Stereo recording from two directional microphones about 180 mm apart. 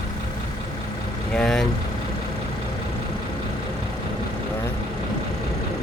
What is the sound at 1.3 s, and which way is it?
Speech, 5° left (ahead or behind).